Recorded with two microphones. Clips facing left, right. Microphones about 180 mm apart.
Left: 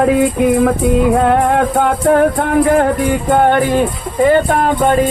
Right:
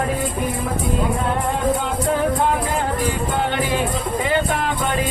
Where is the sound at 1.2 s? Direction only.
65° left (ahead or behind).